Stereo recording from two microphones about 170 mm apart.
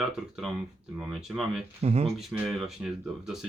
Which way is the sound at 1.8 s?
35° right (ahead or behind).